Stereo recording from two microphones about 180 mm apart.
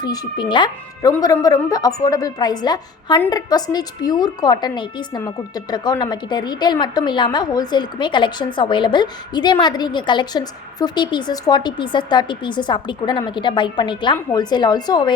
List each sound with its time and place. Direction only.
0.0 s a woman's voice: 25° left (ahead or behind)